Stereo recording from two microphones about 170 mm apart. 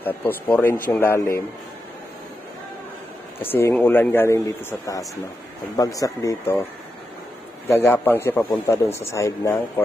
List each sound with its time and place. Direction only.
0.0 s a man's voice: 10° left (ahead or behind)
3.4 s a man's voice: 10° left (ahead or behind)